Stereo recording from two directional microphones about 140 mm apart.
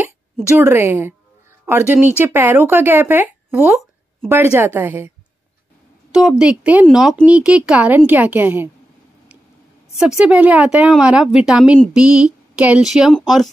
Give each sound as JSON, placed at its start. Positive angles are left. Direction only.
{"t": 0.6, "sound": "speech", "side_deg": -15}
{"t": 6.1, "sound": "speech", "side_deg": -5}
{"t": 9.9, "sound": "speech", "side_deg": -5}